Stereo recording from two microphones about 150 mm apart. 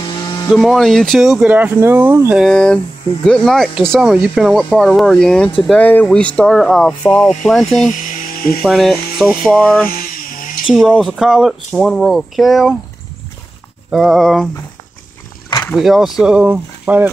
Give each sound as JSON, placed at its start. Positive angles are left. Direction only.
{"t": 0.0, "sound": "a sound", "side_deg": 30}
{"t": 0.5, "sound": "speech", "side_deg": 0}
{"t": 2.4, "sound": "speech", "side_deg": 5}
{"t": 7.9, "sound": "electric shaver", "side_deg": 60}
{"t": 8.6, "sound": "speech", "side_deg": 0}
{"t": 9.5, "sound": "a sound", "side_deg": 5}
{"t": 9.8, "sound": "vehicle", "side_deg": 70}
{"t": 10.7, "sound": "speech", "side_deg": 0}
{"t": 13.8, "sound": "speech", "side_deg": 0}
{"t": 15.7, "sound": "speech", "side_deg": 0}